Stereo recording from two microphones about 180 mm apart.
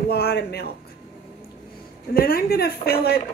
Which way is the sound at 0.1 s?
65° left (ahead or behind).